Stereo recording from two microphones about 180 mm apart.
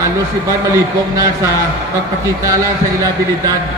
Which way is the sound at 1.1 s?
20° right (ahead or behind).